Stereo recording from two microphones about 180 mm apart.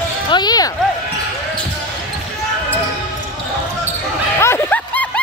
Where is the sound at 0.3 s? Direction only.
25° left (ahead or behind).